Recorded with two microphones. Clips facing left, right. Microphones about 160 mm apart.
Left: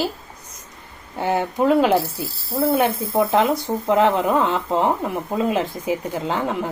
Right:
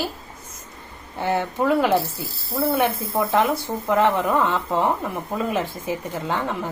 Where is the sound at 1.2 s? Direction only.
15° left (ahead or behind).